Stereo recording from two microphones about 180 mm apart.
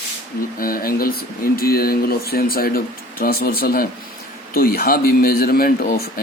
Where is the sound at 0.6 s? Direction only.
55° left (ahead or behind).